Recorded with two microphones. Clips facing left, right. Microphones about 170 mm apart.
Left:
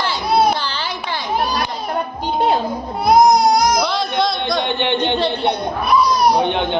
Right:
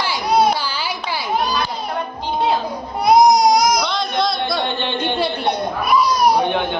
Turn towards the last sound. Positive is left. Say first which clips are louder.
# left 1 dB
turn(degrees=20)  # may be behind; listen again after turning